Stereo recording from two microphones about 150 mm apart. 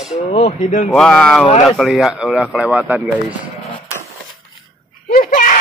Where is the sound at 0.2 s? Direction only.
50° left (ahead or behind).